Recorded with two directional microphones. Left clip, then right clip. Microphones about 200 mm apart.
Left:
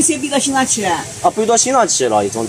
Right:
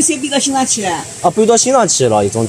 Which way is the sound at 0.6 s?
Centre (ahead or behind).